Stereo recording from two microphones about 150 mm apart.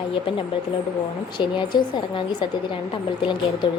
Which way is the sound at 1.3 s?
30° left (ahead or behind).